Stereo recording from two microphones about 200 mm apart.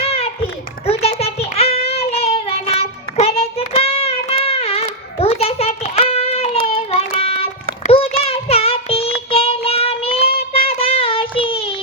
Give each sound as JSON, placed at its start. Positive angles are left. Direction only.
{"t": 0.0, "sound": "children playing", "side_deg": 30}
{"t": 0.9, "sound": "child singing", "side_deg": 30}
{"t": 4.4, "sound": "a sound", "side_deg": 30}
{"t": 6.7, "sound": "child singing", "side_deg": 30}